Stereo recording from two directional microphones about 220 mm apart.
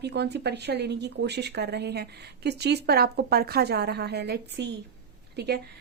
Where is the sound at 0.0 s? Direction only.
50° right (ahead or behind).